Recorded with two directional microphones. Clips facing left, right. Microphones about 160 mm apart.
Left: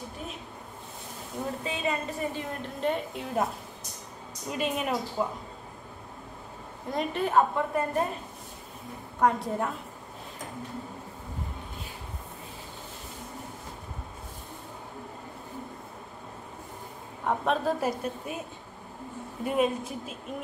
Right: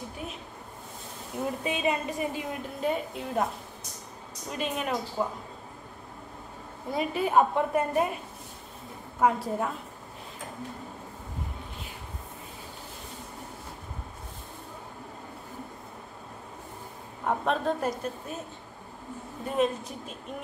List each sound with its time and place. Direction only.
1.6 s a woman's voice: 15° right (ahead or behind); by 3.4 s centre (ahead or behind)
4.5 s a woman's voice: 5° left (ahead or behind)
6.9 s a woman's voice: 5° right (ahead or behind)
7.3 s a woman's voice: 15° right (ahead or behind)
9.2 s a woman's voice: centre (ahead or behind)
17.2 s a woman's voice: centre (ahead or behind)
19.4 s speech: 10° left (ahead or behind)